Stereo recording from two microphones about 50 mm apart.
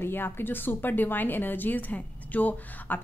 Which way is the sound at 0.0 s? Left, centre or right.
Left.